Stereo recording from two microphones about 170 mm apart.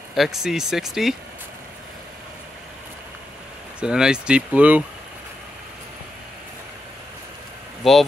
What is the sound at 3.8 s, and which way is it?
Speech, 5° right (ahead or behind).